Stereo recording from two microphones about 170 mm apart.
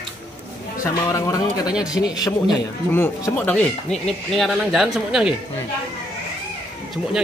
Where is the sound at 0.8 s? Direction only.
20° left (ahead or behind).